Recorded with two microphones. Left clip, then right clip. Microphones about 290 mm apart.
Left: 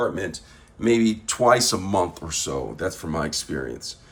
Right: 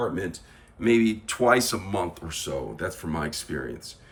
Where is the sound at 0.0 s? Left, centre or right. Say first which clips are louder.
Left 4 dB; left.